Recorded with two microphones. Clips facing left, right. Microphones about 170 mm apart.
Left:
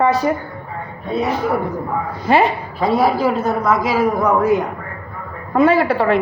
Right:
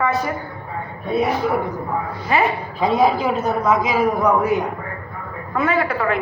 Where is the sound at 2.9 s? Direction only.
5° left (ahead or behind).